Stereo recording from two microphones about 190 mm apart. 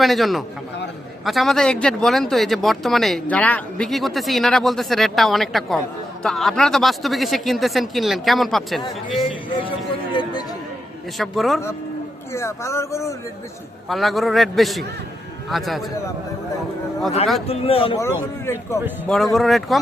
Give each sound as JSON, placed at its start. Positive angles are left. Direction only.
{"t": 0.0, "sound": "speech", "side_deg": 0}
{"t": 9.6, "sound": "a sound", "side_deg": 25}
{"t": 11.2, "sound": "speech", "side_deg": 0}
{"t": 12.3, "sound": "speech", "side_deg": 15}
{"t": 13.8, "sound": "speech", "side_deg": 0}
{"t": 17.4, "sound": "speech", "side_deg": 30}
{"t": 17.9, "sound": "speech", "side_deg": 15}
{"t": 19.1, "sound": "speech", "side_deg": 0}